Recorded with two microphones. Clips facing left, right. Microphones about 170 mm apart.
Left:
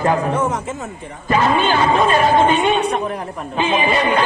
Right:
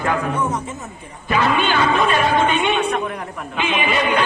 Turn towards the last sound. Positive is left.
turn(degrees=35)  # may be behind; listen again after turning